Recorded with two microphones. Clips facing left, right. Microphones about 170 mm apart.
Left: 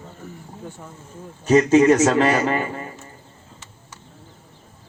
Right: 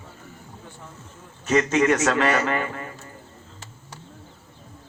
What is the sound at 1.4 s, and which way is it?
A man's voice, 35° left (ahead or behind).